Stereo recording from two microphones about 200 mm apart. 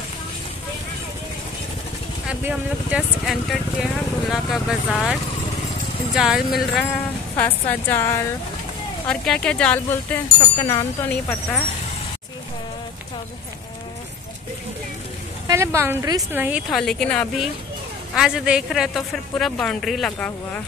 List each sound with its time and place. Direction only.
2.2 s speech: 5° right (ahead or behind)
6.1 s a woman's voice: centre (ahead or behind)
10.6 s a woman's voice: 20° left (ahead or behind)
15.4 s speech: 15° right (ahead or behind); by 20.6 s 5° left (ahead or behind)